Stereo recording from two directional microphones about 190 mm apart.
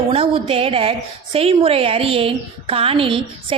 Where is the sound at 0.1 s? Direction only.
30° right (ahead or behind).